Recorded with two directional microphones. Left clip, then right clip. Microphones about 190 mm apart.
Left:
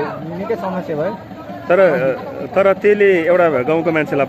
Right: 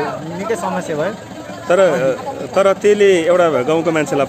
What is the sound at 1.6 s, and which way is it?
Speech, 10° right (ahead or behind).